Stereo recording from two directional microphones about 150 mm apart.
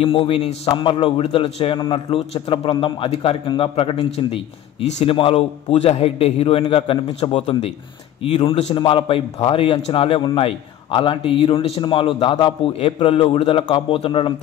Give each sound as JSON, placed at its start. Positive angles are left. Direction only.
{"t": 0.0, "sound": "a man's voice", "side_deg": 35}